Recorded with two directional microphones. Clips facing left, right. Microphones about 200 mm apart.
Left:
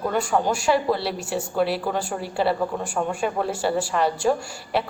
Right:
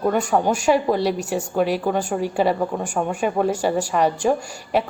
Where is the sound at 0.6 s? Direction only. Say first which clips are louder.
Right 3 dB; 15° right (ahead or behind).